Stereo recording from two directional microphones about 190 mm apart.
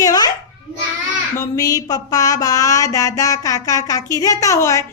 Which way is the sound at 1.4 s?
20° left (ahead or behind).